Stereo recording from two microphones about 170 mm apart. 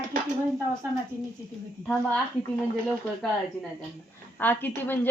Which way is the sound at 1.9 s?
5° left (ahead or behind).